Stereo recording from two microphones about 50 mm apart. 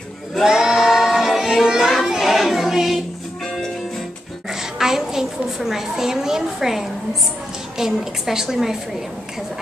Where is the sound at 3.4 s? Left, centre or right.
Centre.